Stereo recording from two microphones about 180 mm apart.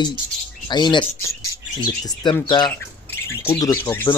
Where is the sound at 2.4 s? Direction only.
25° left (ahead or behind).